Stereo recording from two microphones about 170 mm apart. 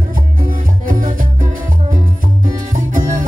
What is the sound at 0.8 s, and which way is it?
Music, 55° right (ahead or behind).